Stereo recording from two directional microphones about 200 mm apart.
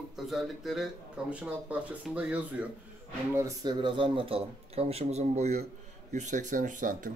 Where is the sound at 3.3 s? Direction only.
20° right (ahead or behind); by 7.1 s 40° right (ahead or behind).